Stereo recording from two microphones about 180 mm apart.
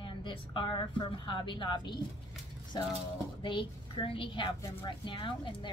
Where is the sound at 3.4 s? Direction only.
25° left (ahead or behind).